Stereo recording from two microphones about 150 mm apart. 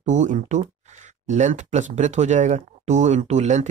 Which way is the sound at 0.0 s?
55° right (ahead or behind).